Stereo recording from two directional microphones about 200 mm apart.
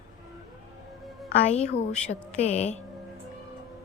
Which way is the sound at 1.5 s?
35° left (ahead or behind).